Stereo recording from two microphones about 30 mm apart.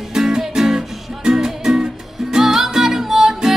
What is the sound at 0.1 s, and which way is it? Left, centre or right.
Music, centre.